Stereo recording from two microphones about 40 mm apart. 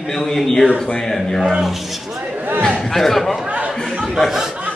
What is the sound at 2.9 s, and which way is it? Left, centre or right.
Speech, centre.